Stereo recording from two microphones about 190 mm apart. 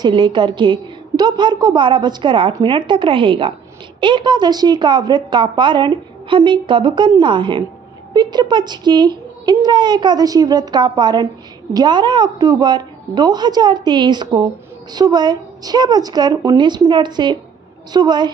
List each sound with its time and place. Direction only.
0.0 s a woman's voice: 25° right (ahead or behind)